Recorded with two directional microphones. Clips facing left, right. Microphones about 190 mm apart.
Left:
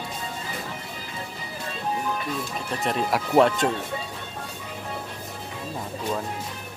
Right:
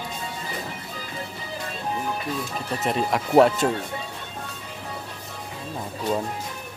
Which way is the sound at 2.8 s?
Centre (ahead or behind).